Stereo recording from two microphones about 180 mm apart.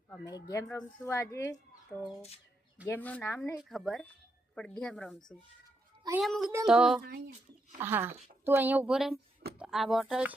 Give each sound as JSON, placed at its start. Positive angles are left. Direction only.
{"t": 0.3, "sound": "speech", "side_deg": 20}
{"t": 2.8, "sound": "speech", "side_deg": 10}
{"t": 3.6, "sound": "speech", "side_deg": 0}
{"t": 6.1, "sound": "a woman's voice", "side_deg": 0}